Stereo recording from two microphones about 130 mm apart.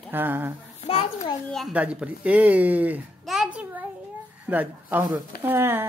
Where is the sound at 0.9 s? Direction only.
50° left (ahead or behind).